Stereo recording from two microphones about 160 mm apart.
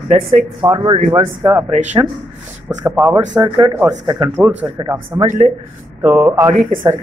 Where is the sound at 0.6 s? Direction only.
25° right (ahead or behind).